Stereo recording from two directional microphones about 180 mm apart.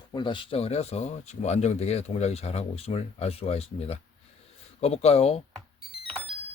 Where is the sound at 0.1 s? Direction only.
25° left (ahead or behind).